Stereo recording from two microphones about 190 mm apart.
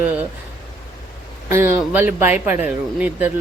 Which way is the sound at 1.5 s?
10° right (ahead or behind).